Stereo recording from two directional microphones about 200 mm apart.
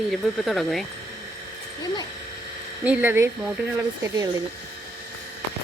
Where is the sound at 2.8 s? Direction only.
10° right (ahead or behind).